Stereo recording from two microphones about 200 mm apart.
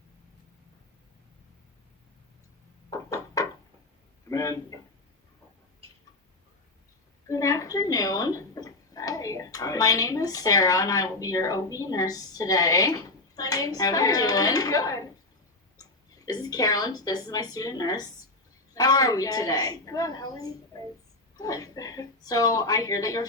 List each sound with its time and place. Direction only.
2.9 s wood: 15° left (ahead or behind)
4.3 s a man's voice: 15° left (ahead or behind)
7.3 s a woman's voice: 15° left (ahead or behind)